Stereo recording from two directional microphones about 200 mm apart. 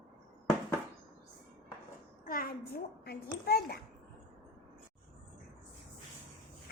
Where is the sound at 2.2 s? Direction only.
45° left (ahead or behind).